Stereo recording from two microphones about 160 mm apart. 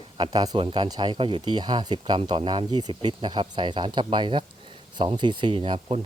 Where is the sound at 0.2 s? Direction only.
25° right (ahead or behind).